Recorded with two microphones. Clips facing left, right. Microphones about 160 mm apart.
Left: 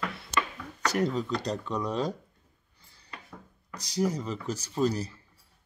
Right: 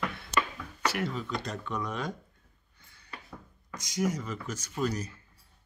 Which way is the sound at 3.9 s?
35° left (ahead or behind).